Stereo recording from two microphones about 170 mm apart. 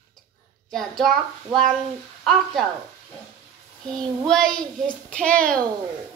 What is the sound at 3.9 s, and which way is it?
Child singing, 5° left (ahead or behind).